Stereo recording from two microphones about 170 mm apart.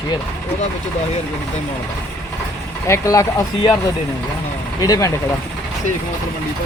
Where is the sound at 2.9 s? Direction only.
15° left (ahead or behind).